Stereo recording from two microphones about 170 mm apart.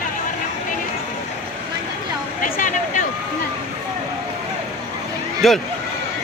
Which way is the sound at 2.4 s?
50° left (ahead or behind).